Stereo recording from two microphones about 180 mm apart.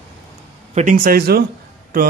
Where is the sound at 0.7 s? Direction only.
50° right (ahead or behind).